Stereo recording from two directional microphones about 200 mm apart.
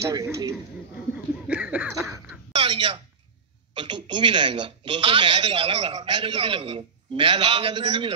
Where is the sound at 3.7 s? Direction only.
25° right (ahead or behind).